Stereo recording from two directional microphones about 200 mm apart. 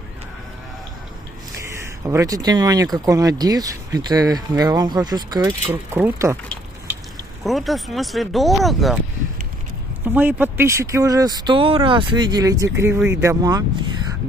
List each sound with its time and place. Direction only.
2.0 s speech: 15° right (ahead or behind)
7.4 s speech: centre (ahead or behind)
10.0 s speech: 10° right (ahead or behind)